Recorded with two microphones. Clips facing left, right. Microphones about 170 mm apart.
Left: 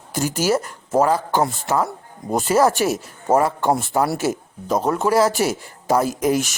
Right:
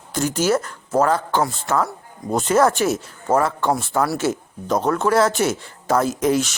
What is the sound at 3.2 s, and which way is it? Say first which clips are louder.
A man's voice: left 1 dB; 20° left (ahead or behind).